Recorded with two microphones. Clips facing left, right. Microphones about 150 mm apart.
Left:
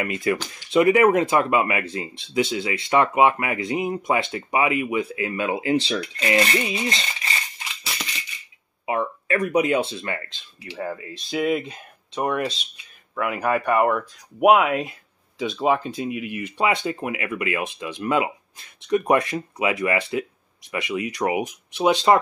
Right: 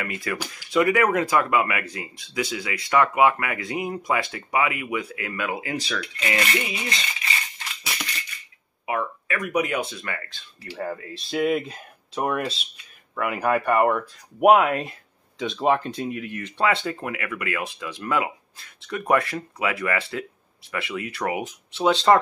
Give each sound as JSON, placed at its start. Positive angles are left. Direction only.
{"t": 0.0, "sound": "speech", "side_deg": 20}
{"t": 7.8, "sound": "a sound", "side_deg": 0}
{"t": 8.8, "sound": "speech", "side_deg": 30}
{"t": 10.7, "sound": "speech", "side_deg": 0}